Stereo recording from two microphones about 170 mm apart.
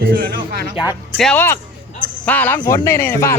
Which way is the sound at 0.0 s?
65° right (ahead or behind).